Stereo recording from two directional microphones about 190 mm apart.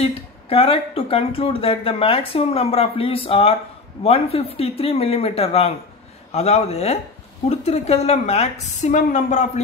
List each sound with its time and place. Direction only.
0.0 s a woman's voice: 30° left (ahead or behind)